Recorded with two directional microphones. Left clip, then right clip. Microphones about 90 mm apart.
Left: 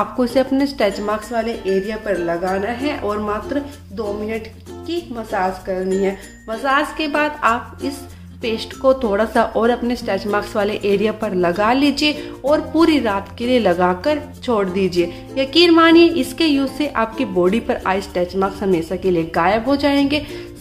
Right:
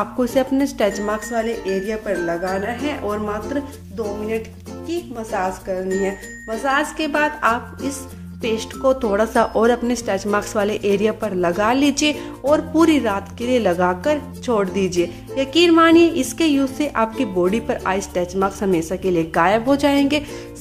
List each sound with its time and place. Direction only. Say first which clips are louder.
0.0 s a woman's voice: left 2 dB; 20° right (ahead or behind)
4.8 s a woman's voice: left 1 dB; 30° right (ahead or behind)